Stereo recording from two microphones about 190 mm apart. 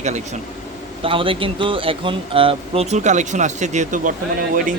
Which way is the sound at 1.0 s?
30° right (ahead or behind).